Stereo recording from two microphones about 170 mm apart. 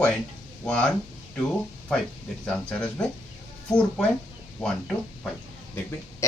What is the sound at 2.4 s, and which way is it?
Speech, 5° left (ahead or behind).